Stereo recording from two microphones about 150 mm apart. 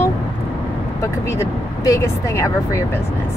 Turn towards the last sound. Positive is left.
turn(degrees=20)  # may be behind; listen again after turning